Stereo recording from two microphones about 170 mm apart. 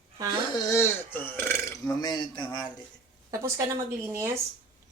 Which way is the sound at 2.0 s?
25° left (ahead or behind).